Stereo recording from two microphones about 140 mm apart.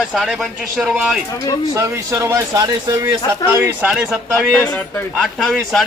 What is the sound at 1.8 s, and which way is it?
Speech, 20° right (ahead or behind).